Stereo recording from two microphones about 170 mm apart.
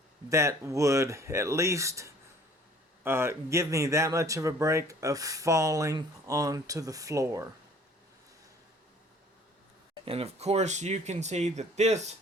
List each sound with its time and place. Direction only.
0.3 s speech: 15° right (ahead or behind)
9.9 s speech: 35° right (ahead or behind)